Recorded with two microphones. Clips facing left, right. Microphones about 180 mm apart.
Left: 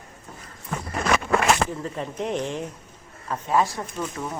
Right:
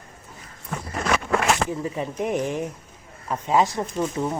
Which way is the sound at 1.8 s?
10° right (ahead or behind).